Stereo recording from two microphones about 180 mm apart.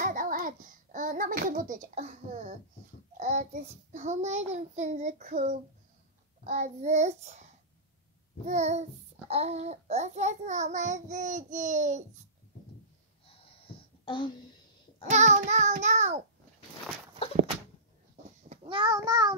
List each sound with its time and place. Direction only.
0.0 s babbling: 50° right (ahead or behind)
3.2 s a child's voice: 40° right (ahead or behind)
8.5 s a child's voice: 40° right (ahead or behind)
13.3 s a sound: 30° left (ahead or behind)
15.0 s a child's voice: 40° right (ahead or behind)
18.5 s a child's voice: 30° right (ahead or behind)